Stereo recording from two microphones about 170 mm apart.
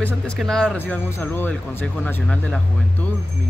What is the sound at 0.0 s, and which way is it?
Speech, 5° left (ahead or behind).